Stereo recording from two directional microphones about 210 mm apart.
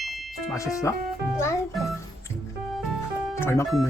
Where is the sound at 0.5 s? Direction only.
15° left (ahead or behind).